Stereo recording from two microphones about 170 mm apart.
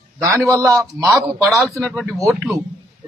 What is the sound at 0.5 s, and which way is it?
A man's voice, 15° right (ahead or behind).